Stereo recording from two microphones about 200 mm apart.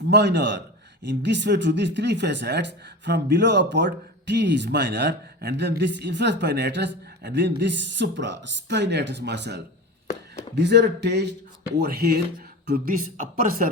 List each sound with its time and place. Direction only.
0.1 s a man's voice: 60° right (ahead or behind); by 13.7 s 45° right (ahead or behind)